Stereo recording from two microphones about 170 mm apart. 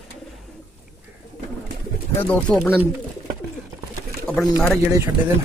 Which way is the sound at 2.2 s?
5° left (ahead or behind).